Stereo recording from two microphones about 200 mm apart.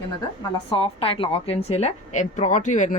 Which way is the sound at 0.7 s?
30° left (ahead or behind).